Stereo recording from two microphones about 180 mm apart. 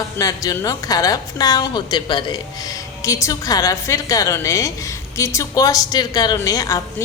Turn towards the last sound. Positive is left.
turn(degrees=20)  # may be behind; listen again after turning